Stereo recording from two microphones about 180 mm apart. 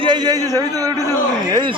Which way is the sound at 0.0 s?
25° right (ahead or behind).